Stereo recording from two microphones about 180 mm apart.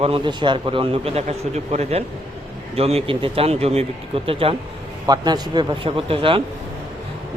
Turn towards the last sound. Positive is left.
turn(degrees=-30)  # may be behind; listen again after turning